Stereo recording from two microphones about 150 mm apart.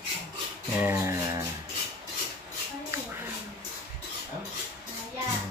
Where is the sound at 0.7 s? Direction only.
15° right (ahead or behind).